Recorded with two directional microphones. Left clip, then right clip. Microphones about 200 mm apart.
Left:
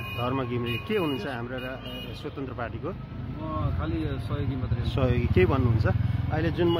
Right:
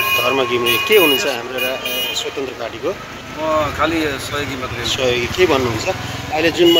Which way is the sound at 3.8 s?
5° left (ahead or behind).